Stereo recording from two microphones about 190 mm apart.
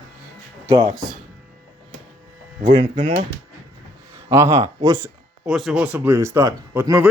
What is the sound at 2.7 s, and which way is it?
Speech, 30° right (ahead or behind).